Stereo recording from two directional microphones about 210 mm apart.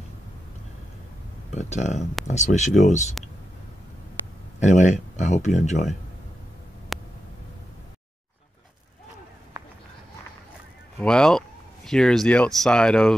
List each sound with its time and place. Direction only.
1.5 s speech: 35° left (ahead or behind)
4.6 s speech: 35° left (ahead or behind)
6.9 s a sound: centre (ahead or behind)
11.0 s speech: 5° left (ahead or behind)